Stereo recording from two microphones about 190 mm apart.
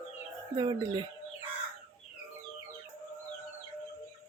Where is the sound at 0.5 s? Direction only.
25° right (ahead or behind).